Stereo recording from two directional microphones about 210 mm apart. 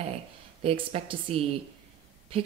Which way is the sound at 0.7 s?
25° right (ahead or behind).